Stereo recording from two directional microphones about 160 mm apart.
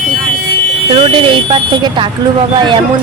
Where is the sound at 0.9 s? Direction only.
35° right (ahead or behind).